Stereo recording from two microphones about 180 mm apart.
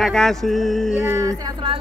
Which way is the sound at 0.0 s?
Centre (ahead or behind).